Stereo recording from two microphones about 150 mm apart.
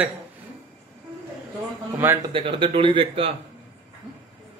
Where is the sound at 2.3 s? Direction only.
35° right (ahead or behind).